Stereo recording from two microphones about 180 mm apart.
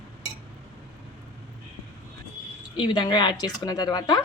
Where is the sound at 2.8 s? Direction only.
25° left (ahead or behind).